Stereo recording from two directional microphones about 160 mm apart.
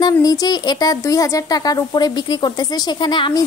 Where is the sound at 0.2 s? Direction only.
25° left (ahead or behind).